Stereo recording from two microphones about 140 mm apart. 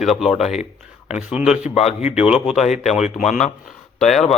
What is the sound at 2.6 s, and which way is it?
Speech, 55° left (ahead or behind).